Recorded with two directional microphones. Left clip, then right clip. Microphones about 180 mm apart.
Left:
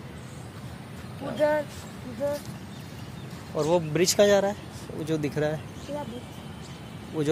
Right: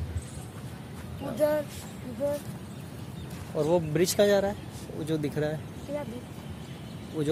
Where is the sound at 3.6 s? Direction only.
5° left (ahead or behind).